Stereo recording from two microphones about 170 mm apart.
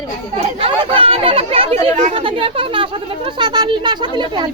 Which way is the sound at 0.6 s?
35° right (ahead or behind).